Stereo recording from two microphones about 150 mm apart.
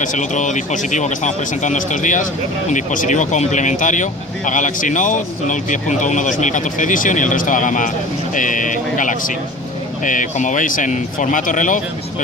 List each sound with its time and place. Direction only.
0.0 s speech: 55° left (ahead or behind)